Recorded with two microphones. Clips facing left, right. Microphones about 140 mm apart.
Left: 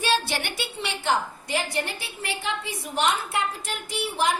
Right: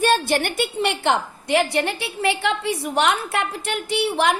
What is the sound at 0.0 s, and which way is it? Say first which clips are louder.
A woman's voice: right 7 dB; 50° right (ahead or behind).